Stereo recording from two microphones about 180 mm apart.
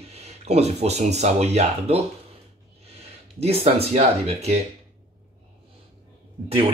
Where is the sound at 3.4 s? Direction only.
35° right (ahead or behind).